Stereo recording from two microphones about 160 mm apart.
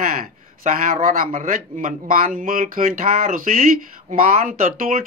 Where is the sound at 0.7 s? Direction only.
55° right (ahead or behind).